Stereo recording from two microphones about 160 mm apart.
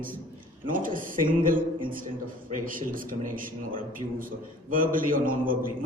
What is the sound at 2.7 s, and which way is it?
A man's voice, 60° right (ahead or behind).